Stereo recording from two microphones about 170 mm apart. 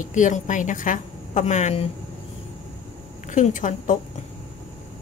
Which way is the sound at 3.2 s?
45° left (ahead or behind).